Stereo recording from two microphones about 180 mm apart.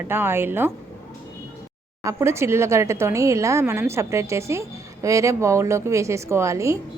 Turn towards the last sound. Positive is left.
turn(degrees=-15)  # may be behind; listen again after turning